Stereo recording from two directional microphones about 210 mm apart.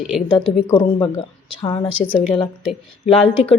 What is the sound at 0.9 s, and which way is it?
Speech, 20° left (ahead or behind).